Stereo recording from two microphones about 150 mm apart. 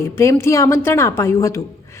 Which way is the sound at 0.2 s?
20° left (ahead or behind).